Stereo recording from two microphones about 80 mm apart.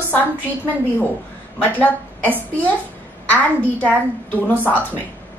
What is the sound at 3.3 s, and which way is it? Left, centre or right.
Speech, centre.